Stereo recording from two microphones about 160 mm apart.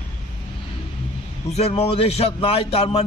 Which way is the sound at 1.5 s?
40° left (ahead or behind).